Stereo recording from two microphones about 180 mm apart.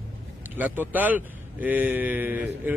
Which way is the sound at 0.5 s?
10° right (ahead or behind).